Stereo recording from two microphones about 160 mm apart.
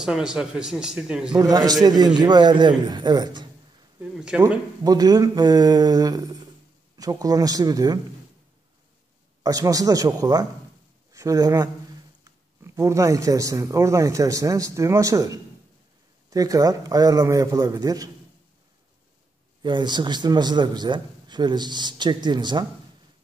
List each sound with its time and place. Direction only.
0.0 s a man's voice: 5° right (ahead or behind)
1.3 s a man's voice: 25° right (ahead or behind)
4.0 s a man's voice: 5° right (ahead or behind)
4.8 s a man's voice: 25° right (ahead or behind)
9.4 s a man's voice: 20° right (ahead or behind)
19.6 s a man's voice: 30° right (ahead or behind)